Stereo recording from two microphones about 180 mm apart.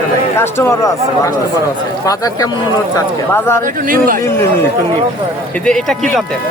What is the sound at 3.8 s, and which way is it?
Speech, 50° right (ahead or behind).